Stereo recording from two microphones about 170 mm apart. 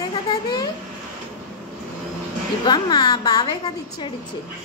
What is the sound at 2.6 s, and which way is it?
Speech, 25° left (ahead or behind).